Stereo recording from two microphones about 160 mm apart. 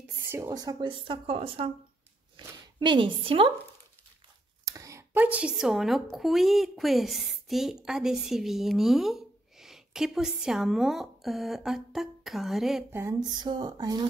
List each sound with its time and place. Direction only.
0.0 s speech: 15° right (ahead or behind); by 1.7 s 35° right (ahead or behind)
2.3 s zipper: 30° right (ahead or behind)
4.6 s a woman's voice: 20° right (ahead or behind); by 12.8 s centre (ahead or behind)
13.3 s speech: 25° right (ahead or behind)